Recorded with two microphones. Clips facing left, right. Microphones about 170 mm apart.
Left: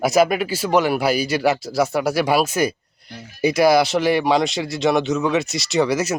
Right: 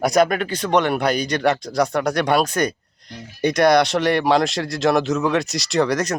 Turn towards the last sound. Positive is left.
turn(degrees=5)  # may be behind; listen again after turning